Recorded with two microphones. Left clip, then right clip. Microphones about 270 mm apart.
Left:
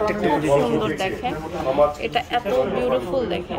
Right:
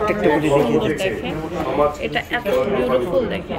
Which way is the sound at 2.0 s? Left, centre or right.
Centre.